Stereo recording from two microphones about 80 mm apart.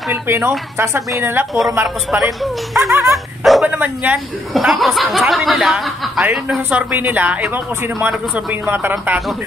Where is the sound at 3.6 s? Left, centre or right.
Right.